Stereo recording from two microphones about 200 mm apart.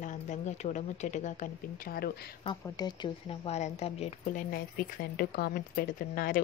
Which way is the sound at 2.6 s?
20° left (ahead or behind).